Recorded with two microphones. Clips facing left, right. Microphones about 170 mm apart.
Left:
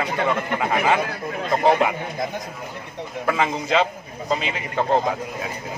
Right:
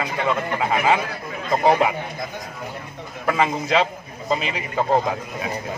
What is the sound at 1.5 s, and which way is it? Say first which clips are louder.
Speech: right 1 dB; centre (ahead or behind).